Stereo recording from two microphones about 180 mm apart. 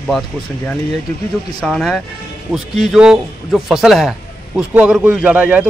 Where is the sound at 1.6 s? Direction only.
Centre (ahead or behind).